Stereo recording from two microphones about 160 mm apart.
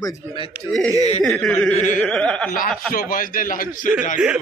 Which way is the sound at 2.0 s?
5° left (ahead or behind).